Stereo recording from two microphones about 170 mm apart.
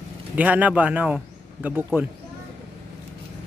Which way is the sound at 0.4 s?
10° right (ahead or behind).